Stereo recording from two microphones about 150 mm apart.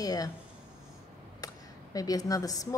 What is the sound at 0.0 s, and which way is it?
Speech, 25° left (ahead or behind).